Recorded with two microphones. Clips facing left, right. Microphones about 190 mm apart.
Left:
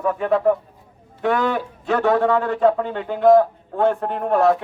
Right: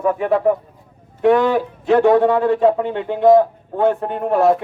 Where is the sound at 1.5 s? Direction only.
15° right (ahead or behind).